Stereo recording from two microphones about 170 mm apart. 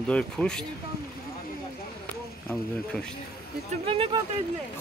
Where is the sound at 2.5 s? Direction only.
5° left (ahead or behind).